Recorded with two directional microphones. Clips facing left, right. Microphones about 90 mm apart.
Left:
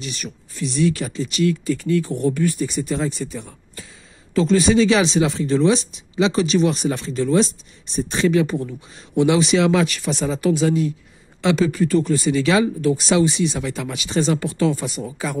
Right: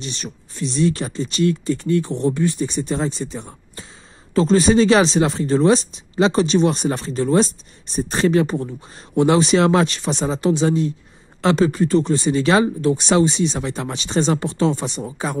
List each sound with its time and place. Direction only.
0.0 s speech: 35° right (ahead or behind)